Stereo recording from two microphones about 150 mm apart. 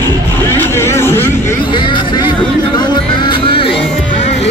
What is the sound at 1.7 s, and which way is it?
Speech, 30° left (ahead or behind).